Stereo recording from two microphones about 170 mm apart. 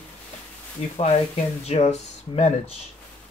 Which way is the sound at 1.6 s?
40° left (ahead or behind).